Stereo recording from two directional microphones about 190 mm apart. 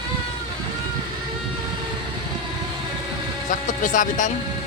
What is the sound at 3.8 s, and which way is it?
Speech, 45° left (ahead or behind).